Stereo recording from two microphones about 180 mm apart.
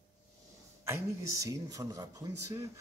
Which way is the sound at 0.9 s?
15° right (ahead or behind).